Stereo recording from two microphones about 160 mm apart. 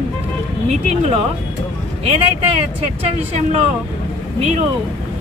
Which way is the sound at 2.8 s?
40° right (ahead or behind).